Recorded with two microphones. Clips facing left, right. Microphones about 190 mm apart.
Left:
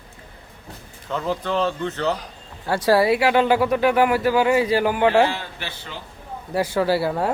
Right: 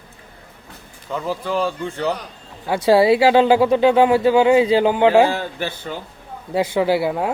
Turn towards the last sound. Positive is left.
turn(degrees=-10)  # may be behind; listen again after turning